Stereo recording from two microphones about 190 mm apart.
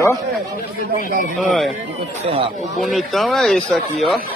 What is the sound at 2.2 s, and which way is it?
Speech, 30° right (ahead or behind).